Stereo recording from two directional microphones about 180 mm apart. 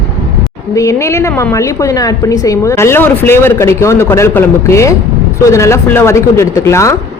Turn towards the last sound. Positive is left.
turn(degrees=15)  # may be behind; listen again after turning